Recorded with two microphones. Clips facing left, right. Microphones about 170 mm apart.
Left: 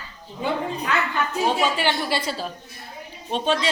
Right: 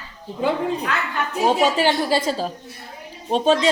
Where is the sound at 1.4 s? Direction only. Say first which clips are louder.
Right 6 dB; 40° right (ahead or behind).